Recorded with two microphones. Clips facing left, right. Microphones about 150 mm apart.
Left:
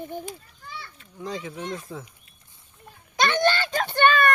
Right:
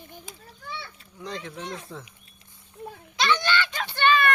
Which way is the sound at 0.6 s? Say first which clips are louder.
Right 2 dB; 75° right (ahead or behind).